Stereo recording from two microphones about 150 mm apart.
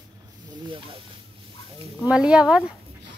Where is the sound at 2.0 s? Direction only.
5° right (ahead or behind).